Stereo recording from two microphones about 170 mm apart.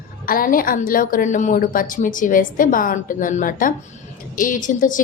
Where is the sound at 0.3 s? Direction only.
55° left (ahead or behind).